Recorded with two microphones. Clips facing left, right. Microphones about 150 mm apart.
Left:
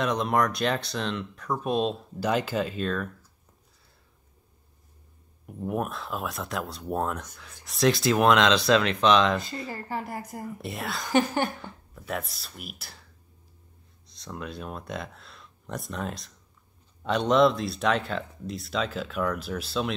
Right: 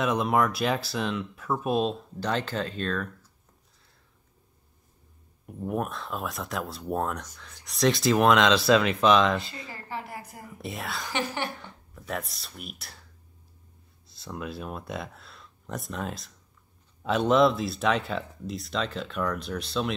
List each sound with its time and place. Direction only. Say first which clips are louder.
0.0 s speech: right 1 dB; 5° right (ahead or behind)
5.5 s speech: even; centre (ahead or behind)
9.4 s speech: left 5 dB; 45° left (ahead or behind)
10.6 s speech: right 2 dB; centre (ahead or behind)
11.1 s speech: left 8 dB; 45° left (ahead or behind)
11.9 s speech: left 1 dB; centre (ahead or behind)
14.0 s speech: right 1 dB; 5° right (ahead or behind)